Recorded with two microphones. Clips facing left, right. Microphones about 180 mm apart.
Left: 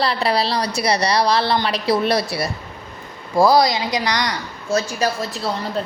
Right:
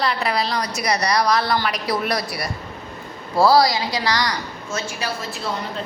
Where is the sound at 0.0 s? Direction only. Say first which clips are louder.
Left 3 dB; 30° left (ahead or behind).